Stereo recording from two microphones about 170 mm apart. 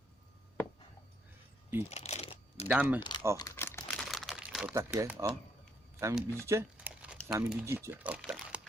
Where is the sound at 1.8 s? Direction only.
40° left (ahead or behind).